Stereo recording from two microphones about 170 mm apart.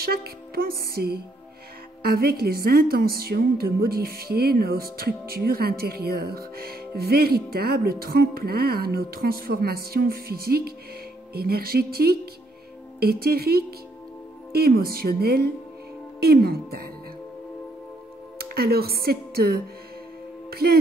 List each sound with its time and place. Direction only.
0.0 s music: 65° right (ahead or behind)
2.0 s a woman's voice: 65° right (ahead or behind)
18.4 s speech: 65° right (ahead or behind)